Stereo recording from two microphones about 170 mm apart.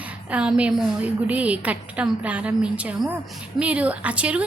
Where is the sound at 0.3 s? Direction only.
5° right (ahead or behind).